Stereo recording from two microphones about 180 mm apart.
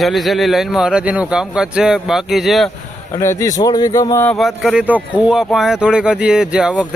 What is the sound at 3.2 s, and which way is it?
Speech, 15° left (ahead or behind).